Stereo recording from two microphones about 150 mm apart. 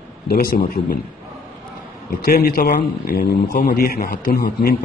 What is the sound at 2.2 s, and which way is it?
A man's voice, 80° left.